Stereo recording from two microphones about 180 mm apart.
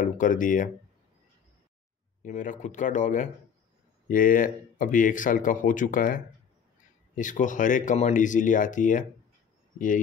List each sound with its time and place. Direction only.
0.0 s speech: 45° left (ahead or behind)
2.2 s speech: 45° left (ahead or behind)